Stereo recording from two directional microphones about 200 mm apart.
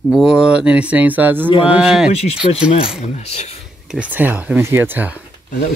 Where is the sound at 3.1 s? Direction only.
30° left (ahead or behind).